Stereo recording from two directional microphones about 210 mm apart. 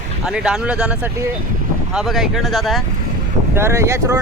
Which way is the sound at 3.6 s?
10° right (ahead or behind).